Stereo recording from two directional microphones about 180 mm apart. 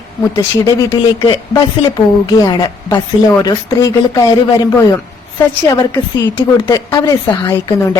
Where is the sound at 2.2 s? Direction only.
20° left (ahead or behind).